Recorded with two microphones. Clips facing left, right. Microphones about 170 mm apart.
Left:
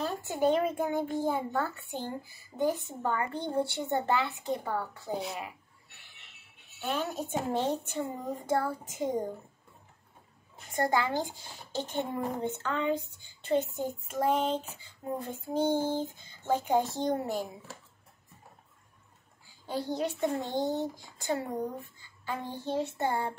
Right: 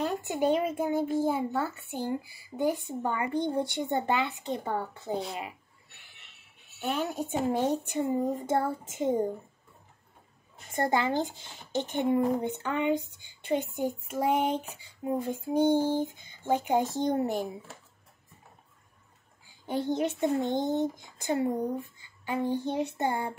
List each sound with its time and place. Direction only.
0.0 s a child's voice: 15° right (ahead or behind)
6.8 s a child's voice: 10° right (ahead or behind)
10.7 s a child's voice: 25° right (ahead or behind)
19.4 s a child's voice: 20° right (ahead or behind)